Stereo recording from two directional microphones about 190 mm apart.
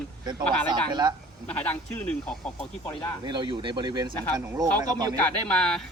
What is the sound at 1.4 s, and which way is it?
Speech, 10° left (ahead or behind).